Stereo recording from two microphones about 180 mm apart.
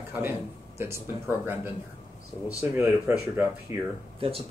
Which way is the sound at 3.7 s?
35° left (ahead or behind).